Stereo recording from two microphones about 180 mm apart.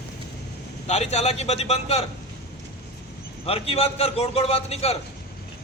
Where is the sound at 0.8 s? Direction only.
35° left (ahead or behind).